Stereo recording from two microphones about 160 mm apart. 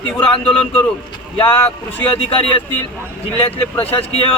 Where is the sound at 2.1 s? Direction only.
35° left (ahead or behind).